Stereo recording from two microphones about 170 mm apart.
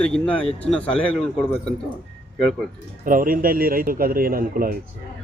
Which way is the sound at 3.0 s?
55° right (ahead or behind).